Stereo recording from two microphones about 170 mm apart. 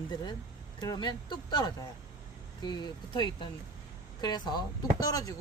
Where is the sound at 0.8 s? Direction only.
25° left (ahead or behind).